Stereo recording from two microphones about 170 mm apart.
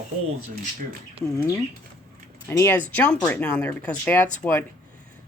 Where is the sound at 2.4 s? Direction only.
15° left (ahead or behind).